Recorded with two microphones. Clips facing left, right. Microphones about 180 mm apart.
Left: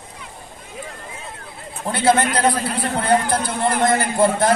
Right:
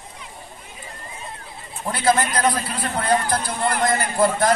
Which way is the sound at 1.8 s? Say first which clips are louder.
Left 3 dB; 25° left (ahead or behind).